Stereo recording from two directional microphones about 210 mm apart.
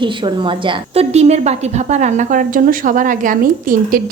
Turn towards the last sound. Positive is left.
turn(degrees=-40)  # may be behind; listen again after turning